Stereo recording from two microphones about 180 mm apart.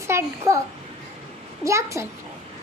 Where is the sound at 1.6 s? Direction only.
15° right (ahead or behind).